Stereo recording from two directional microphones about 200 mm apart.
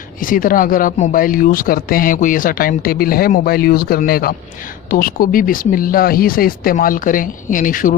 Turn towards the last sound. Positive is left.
turn(degrees=40)  # may be behind; listen again after turning